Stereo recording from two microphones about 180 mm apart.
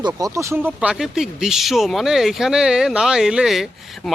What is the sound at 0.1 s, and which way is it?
Speech, 15° right (ahead or behind).